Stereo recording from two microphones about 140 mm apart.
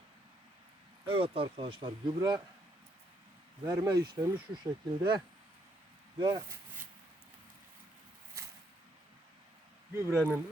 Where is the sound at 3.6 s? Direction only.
30° right (ahead or behind).